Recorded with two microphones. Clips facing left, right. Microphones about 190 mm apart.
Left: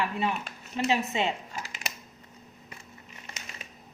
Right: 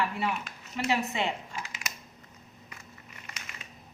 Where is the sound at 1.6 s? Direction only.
30° left (ahead or behind).